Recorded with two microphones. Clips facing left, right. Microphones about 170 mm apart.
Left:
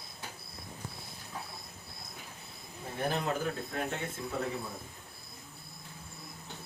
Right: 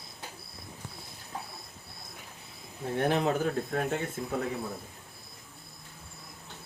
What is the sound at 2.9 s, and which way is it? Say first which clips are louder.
Speech: right 6 dB; 70° right (ahead or behind).